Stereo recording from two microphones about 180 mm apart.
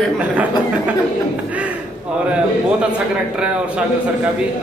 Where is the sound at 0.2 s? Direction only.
10° right (ahead or behind).